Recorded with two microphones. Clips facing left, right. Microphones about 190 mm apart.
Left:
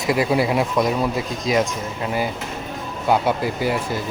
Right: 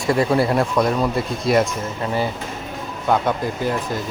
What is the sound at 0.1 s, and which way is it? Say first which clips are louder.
Speech: right 1 dB; 5° left (ahead or behind).